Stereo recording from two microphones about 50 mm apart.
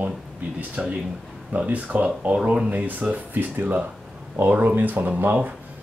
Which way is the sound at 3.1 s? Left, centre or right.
Right.